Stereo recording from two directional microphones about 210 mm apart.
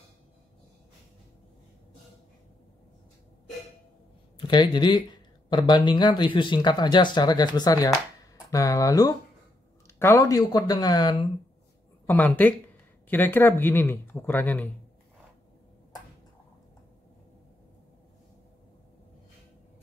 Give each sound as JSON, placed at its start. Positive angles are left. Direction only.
{"t": 4.4, "sound": "speech", "side_deg": 20}
{"t": 12.1, "sound": "speech", "side_deg": 10}